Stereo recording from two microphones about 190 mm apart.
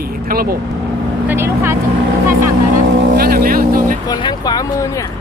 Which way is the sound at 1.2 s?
10° right (ahead or behind).